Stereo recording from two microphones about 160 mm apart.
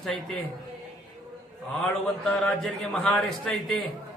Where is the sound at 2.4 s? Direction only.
Centre (ahead or behind).